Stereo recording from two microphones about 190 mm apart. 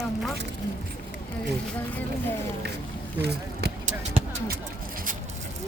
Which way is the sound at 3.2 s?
60° right (ahead or behind).